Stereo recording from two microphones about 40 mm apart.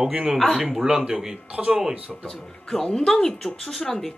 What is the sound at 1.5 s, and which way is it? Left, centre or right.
Speech, right.